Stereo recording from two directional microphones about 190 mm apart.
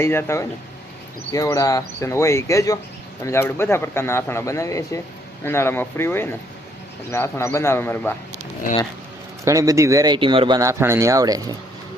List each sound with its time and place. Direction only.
0.0 s speech: 15° left (ahead or behind)
9.4 s speech: 15° right (ahead or behind)